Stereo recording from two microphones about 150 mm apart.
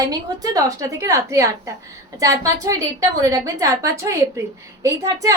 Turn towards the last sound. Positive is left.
turn(degrees=-20)  # may be behind; listen again after turning